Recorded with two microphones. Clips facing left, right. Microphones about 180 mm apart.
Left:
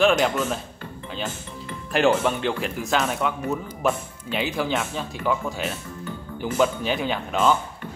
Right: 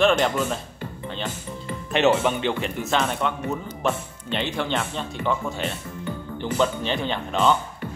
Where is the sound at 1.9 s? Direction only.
Centre (ahead or behind).